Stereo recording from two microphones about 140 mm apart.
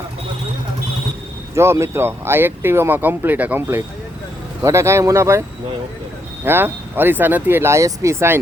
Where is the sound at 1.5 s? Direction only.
20° right (ahead or behind).